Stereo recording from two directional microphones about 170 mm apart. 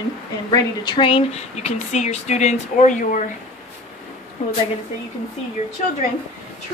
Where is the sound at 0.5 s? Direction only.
25° left (ahead or behind); by 3.2 s 50° left (ahead or behind).